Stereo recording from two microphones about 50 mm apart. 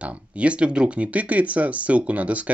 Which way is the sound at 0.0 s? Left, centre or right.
Right.